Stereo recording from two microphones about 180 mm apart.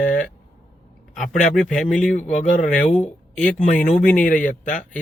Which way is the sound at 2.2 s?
40° left (ahead or behind).